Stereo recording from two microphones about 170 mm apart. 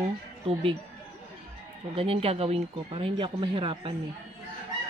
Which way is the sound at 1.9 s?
35° right (ahead or behind).